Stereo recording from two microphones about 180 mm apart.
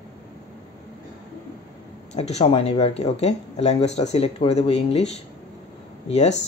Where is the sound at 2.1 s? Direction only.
35° left (ahead or behind).